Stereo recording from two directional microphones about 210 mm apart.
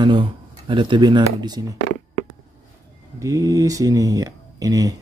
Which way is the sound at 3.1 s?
15° right (ahead or behind).